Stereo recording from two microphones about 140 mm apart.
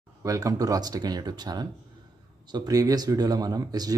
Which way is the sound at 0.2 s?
25° right (ahead or behind).